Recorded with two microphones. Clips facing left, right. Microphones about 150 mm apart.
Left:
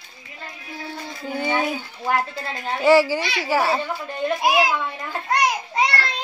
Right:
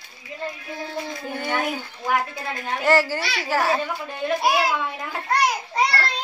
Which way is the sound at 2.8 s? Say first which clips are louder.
Left 5 dB; 10° left (ahead or behind).